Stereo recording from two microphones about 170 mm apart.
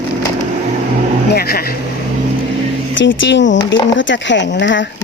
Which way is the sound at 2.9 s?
90° left.